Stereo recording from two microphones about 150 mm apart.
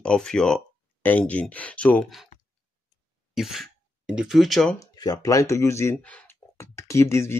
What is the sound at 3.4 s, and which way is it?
Speech, centre (ahead or behind).